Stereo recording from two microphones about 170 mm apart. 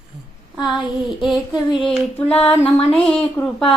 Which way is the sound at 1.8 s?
5° left (ahead or behind).